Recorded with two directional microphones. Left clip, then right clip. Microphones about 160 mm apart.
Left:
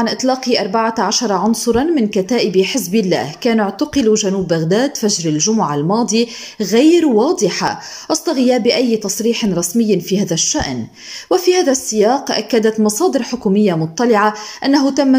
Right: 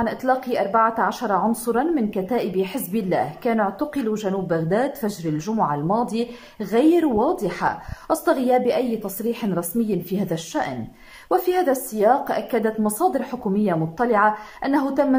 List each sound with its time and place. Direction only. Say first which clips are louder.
0.0 s a woman's voice: left 5 dB; 15° left (ahead or behind)